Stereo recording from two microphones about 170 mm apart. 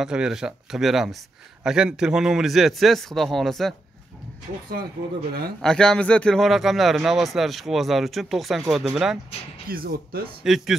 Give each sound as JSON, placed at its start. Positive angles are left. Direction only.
{"t": 0.0, "sound": "a man's voice", "side_deg": -5}
{"t": 5.6, "sound": "a man's voice", "side_deg": 5}
{"t": 9.7, "sound": "speech", "side_deg": -60}
{"t": 10.4, "sound": "a man's voice", "side_deg": 0}